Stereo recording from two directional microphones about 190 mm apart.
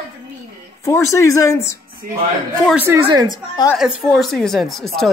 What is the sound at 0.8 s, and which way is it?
Speech, 15° left (ahead or behind).